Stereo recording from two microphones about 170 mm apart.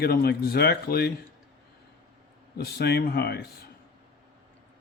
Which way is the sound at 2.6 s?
70° left (ahead or behind).